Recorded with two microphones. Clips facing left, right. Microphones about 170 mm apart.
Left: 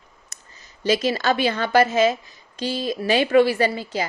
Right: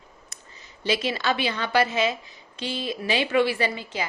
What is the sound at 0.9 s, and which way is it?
A woman's voice, 40° left (ahead or behind).